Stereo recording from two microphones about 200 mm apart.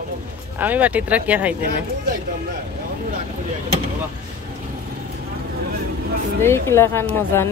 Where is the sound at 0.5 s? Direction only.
10° right (ahead or behind).